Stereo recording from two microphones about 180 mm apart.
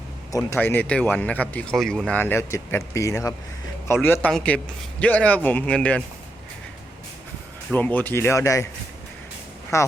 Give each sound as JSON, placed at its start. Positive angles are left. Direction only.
{"t": 0.3, "sound": "a man's voice", "side_deg": 15}
{"t": 7.7, "sound": "a man's voice", "side_deg": 10}
{"t": 9.7, "sound": "a man's voice", "side_deg": 15}